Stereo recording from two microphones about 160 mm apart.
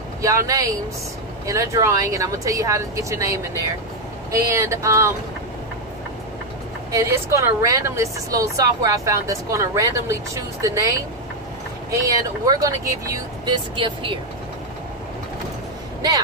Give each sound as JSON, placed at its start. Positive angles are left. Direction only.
{"t": 0.2, "sound": "a woman's voice", "side_deg": -20}
{"t": 4.3, "sound": "a sound", "side_deg": -20}
{"t": 6.9, "sound": "a woman's voice", "side_deg": -20}
{"t": 11.9, "sound": "a woman's voice", "side_deg": -20}
{"t": 13.7, "sound": "speech", "side_deg": -30}